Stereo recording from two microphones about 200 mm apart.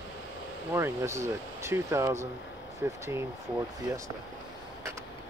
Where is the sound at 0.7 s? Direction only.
15° right (ahead or behind).